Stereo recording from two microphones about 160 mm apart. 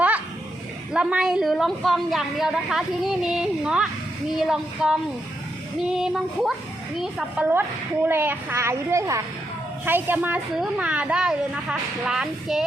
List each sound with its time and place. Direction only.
0.9 s a woman's voice: 5° right (ahead or behind)